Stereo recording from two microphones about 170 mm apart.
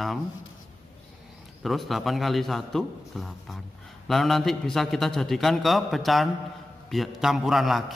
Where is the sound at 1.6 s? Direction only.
Centre (ahead or behind).